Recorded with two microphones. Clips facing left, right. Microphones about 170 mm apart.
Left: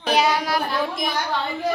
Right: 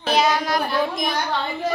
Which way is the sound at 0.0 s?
10° left (ahead or behind).